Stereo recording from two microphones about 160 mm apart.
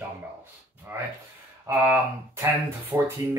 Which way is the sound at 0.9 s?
15° right (ahead or behind).